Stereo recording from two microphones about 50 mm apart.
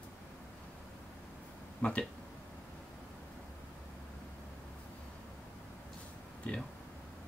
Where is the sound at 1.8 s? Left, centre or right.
Left.